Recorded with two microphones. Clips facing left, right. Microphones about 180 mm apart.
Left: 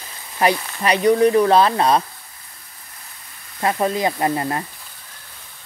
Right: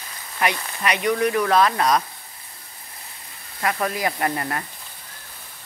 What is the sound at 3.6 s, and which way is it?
Speech, 25° left (ahead or behind).